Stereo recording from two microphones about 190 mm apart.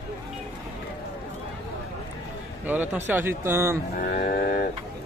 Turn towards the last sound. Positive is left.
turn(degrees=50)  # may be behind; listen again after turning